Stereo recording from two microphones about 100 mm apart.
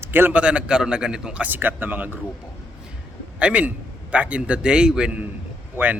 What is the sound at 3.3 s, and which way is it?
A man's voice, 15° right (ahead or behind).